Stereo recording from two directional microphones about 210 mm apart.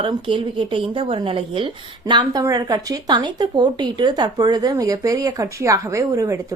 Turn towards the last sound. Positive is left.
turn(degrees=-15)  # may be behind; listen again after turning